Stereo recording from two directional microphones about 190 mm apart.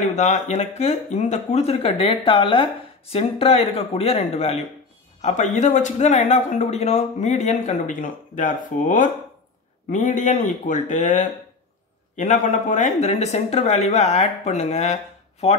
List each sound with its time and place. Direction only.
0.0 s speech: 35° left (ahead or behind)